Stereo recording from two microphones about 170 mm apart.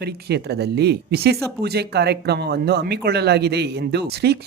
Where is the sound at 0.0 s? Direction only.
75° right (ahead or behind).